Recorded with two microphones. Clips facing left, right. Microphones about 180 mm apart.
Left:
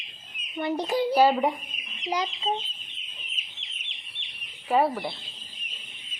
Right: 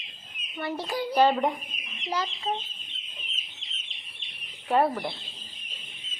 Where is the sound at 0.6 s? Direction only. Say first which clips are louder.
Left 5 dB; 20° left (ahead or behind).